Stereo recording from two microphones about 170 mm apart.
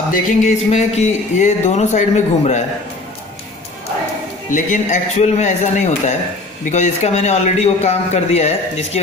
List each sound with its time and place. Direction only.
0.1 s speech: 45° left (ahead or behind)
4.5 s a man's voice: 50° left (ahead or behind)